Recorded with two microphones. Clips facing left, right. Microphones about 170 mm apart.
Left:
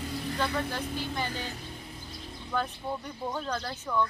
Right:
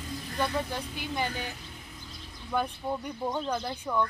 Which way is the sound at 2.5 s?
15° right (ahead or behind).